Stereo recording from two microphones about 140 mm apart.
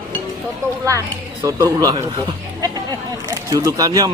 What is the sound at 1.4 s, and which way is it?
Speech, 25° right (ahead or behind).